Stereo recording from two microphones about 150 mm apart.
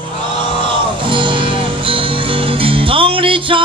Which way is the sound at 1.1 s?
35° right (ahead or behind).